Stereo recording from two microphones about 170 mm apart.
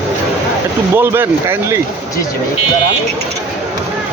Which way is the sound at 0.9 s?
15° right (ahead or behind).